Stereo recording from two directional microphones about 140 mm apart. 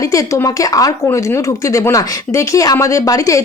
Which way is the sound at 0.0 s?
25° left (ahead or behind).